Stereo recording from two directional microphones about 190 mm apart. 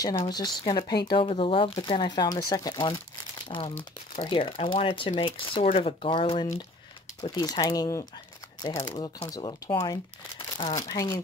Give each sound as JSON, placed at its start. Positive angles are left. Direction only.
{"t": 0.0, "sound": "speech", "side_deg": 20}